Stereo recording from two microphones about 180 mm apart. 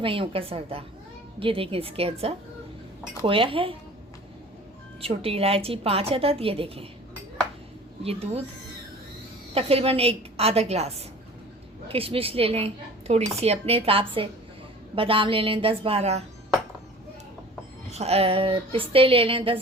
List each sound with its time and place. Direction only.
0.0 s a woman's voice: 30° right (ahead or behind)
4.9 s a woman's voice: 30° right (ahead or behind)
8.0 s a woman's voice: 35° right (ahead or behind)
9.6 s a woman's voice: 35° right (ahead or behind)
17.9 s a woman's voice: 35° right (ahead or behind)